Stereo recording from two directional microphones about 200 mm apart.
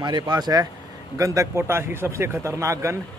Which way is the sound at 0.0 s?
20° right (ahead or behind).